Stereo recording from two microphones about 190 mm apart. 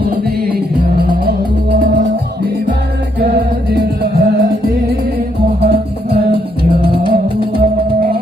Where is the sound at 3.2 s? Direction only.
55° right (ahead or behind).